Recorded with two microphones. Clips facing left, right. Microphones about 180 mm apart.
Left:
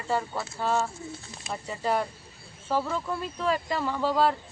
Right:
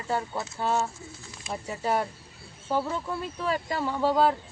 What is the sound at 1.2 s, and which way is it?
Pigeon, 35° left (ahead or behind).